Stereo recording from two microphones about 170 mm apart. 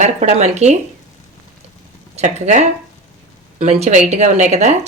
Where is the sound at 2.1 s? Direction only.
45° right (ahead or behind).